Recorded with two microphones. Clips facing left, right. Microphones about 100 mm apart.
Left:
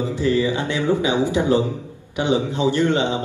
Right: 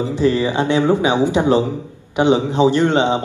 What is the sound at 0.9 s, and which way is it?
A man's voice, 20° right (ahead or behind).